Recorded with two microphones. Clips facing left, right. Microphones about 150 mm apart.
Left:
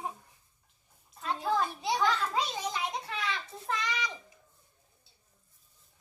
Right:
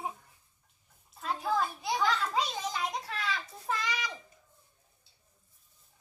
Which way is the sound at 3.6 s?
Centre (ahead or behind).